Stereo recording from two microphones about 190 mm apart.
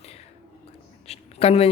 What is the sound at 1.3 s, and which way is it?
Speech, 30° left (ahead or behind).